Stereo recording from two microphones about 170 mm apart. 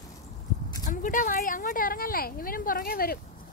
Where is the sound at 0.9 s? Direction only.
50° left (ahead or behind).